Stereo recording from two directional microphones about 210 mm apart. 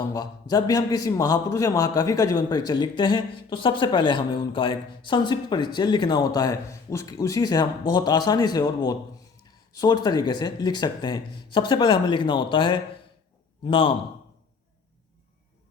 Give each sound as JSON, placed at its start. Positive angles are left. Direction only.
{"t": 0.1, "sound": "a man's voice", "side_deg": 15}